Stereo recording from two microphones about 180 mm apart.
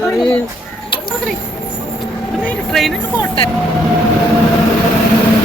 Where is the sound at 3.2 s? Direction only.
30° left (ahead or behind).